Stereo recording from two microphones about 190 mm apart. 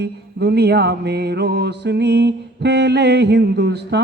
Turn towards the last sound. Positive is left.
turn(degrees=-65)  # may be behind; listen again after turning